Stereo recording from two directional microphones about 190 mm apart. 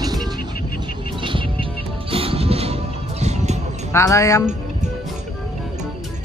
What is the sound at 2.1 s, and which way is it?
Music, 30° right (ahead or behind).